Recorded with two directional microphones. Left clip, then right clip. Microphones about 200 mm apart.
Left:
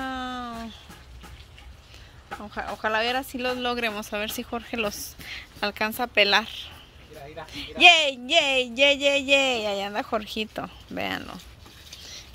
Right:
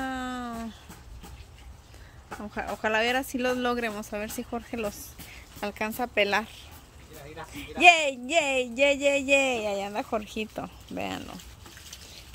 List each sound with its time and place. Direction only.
0.0 s a sound: 15° right (ahead or behind)
2.4 s speech: 20° right (ahead or behind)
3.7 s speech: 10° right (ahead or behind)